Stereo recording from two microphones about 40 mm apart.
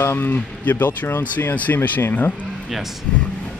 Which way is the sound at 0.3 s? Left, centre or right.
Left.